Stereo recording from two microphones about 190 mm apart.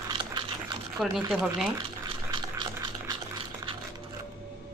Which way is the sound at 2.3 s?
20° right (ahead or behind).